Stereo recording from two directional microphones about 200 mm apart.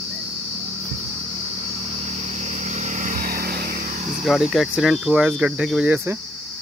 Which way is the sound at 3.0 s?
45° right (ahead or behind).